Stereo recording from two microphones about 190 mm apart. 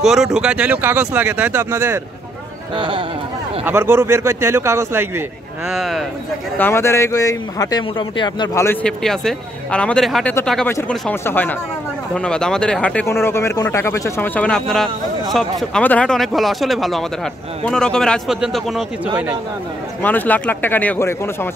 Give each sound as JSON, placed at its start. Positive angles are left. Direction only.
{"t": 0.0, "sound": "speech", "side_deg": 0}
{"t": 2.7, "sound": "speech", "side_deg": -25}
{"t": 3.6, "sound": "speech", "side_deg": -10}
{"t": 5.7, "sound": "a man's voice", "side_deg": 0}
{"t": 6.6, "sound": "speech", "side_deg": 15}
{"t": 8.6, "sound": "a man's voice", "side_deg": 5}
{"t": 20.0, "sound": "speech", "side_deg": 10}